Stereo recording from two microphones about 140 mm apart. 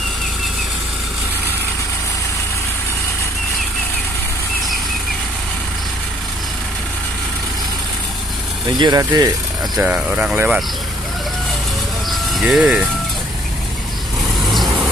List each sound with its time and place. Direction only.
8.7 s speech: 30° right (ahead or behind)
9.8 s speech: 10° right (ahead or behind)
12.1 s vehicle: centre (ahead or behind)